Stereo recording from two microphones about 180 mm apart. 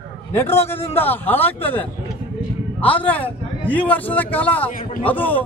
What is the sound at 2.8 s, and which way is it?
A man's voice, 10° left (ahead or behind).